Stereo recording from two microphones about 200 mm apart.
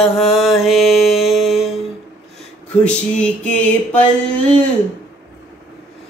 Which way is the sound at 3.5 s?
5° left (ahead or behind).